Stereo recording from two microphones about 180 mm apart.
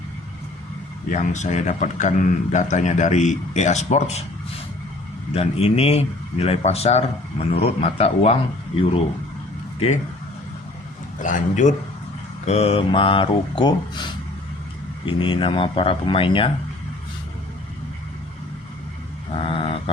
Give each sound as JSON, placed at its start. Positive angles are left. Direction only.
{"t": 1.1, "sound": "speech", "side_deg": 40}
{"t": 5.3, "sound": "speech", "side_deg": 35}
{"t": 11.2, "sound": "a man's voice", "side_deg": 45}
{"t": 19.3, "sound": "a sound", "side_deg": 30}